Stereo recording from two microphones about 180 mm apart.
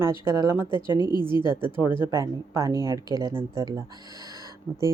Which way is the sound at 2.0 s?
15° right (ahead or behind).